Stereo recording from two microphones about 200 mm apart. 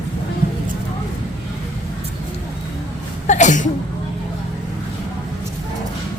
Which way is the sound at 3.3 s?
40° left (ahead or behind).